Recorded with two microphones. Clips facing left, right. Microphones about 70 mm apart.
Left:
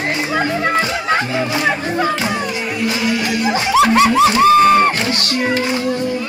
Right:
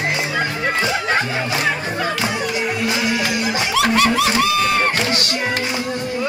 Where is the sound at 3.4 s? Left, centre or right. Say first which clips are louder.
Left 9 dB; left.